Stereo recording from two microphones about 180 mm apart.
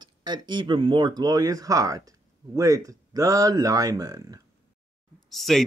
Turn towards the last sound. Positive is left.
turn(degrees=0)  # may be behind; listen again after turning